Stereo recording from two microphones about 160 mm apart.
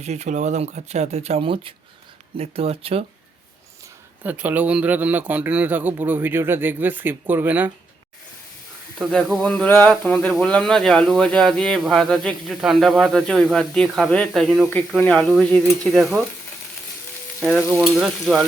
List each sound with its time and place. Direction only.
0.0 s speech: 45° right (ahead or behind)
4.2 s a man's voice: 10° right (ahead or behind)
9.0 s speech: centre (ahead or behind)
17.4 s speech: centre (ahead or behind)